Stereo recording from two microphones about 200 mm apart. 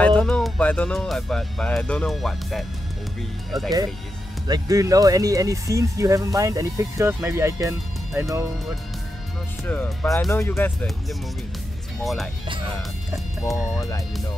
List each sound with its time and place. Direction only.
0.0 s speech: 5° left (ahead or behind)
4.5 s speech: 15° right (ahead or behind)
9.7 s speech: 5° left (ahead or behind)
12.4 s speech: 25° right (ahead or behind)
13.5 s speech: 15° left (ahead or behind)